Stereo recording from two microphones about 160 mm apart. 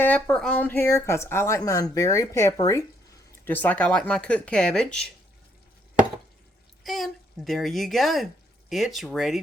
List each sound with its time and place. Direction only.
0.0 s a woman's voice: 10° left (ahead or behind)
6.8 s speech: centre (ahead or behind)